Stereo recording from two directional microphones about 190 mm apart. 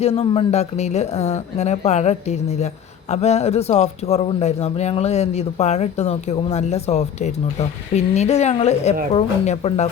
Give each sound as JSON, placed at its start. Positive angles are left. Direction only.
{"t": 0.0, "sound": "speech", "side_deg": 35}